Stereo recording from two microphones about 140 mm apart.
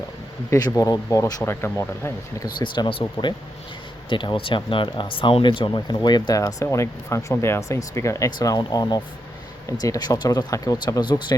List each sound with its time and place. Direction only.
0.5 s speech: 25° left (ahead or behind)
2.6 s speech: 35° left (ahead or behind)